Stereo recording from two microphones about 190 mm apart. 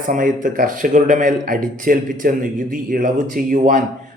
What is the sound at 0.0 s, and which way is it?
A man's voice, 45° right (ahead or behind).